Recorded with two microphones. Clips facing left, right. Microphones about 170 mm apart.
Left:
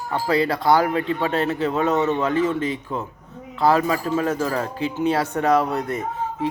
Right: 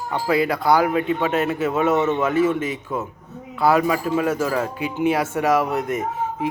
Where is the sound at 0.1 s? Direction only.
15° right (ahead or behind).